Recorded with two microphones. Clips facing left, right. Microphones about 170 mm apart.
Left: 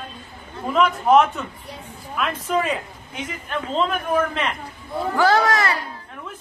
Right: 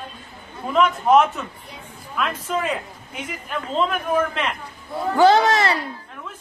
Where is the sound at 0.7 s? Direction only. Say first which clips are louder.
Even; centre (ahead or behind).